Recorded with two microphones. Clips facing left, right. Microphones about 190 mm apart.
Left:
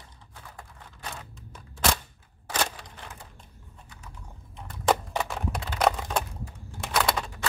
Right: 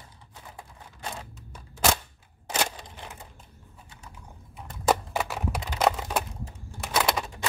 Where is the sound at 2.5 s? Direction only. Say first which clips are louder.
Right 1 dB; 20° right (ahead or behind).